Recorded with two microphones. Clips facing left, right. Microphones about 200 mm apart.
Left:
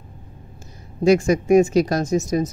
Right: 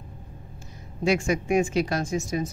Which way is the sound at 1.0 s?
40° left (ahead or behind).